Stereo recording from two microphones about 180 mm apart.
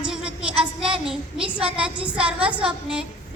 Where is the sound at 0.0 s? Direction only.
5° right (ahead or behind).